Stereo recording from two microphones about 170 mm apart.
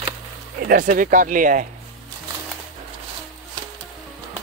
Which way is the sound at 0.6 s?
55° right (ahead or behind).